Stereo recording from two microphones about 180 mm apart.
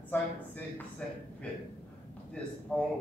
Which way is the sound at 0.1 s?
10° left (ahead or behind).